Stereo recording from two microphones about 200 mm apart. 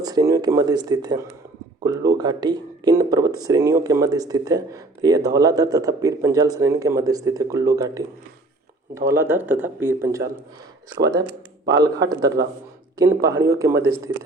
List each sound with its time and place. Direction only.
0.0 s speech: 20° right (ahead or behind)